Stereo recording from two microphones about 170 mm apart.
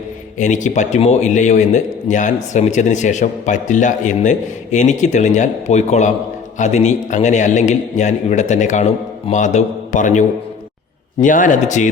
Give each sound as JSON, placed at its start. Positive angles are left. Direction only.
{"t": 0.3, "sound": "a man's voice", "side_deg": 45}